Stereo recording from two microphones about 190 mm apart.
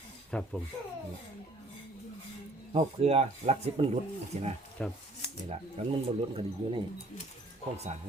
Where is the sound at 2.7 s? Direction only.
35° right (ahead or behind).